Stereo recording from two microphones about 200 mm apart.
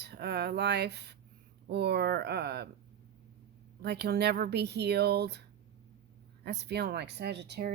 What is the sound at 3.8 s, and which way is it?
Speech, 55° right (ahead or behind).